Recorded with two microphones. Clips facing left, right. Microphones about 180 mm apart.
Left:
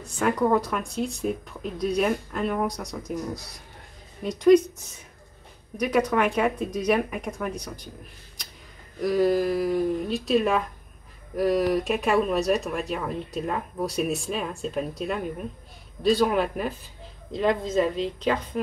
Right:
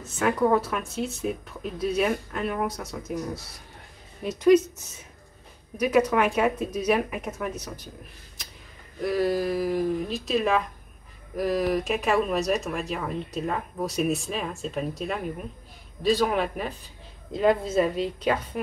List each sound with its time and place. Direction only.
0.0 s speech: 5° right (ahead or behind)
4.2 s a woman's voice: 5° right (ahead or behind)
9.0 s a woman's voice: centre (ahead or behind)